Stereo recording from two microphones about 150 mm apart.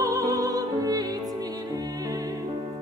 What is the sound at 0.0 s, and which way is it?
Music, 20° right (ahead or behind).